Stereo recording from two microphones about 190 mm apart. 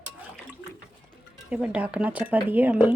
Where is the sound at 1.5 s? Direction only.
5° right (ahead or behind).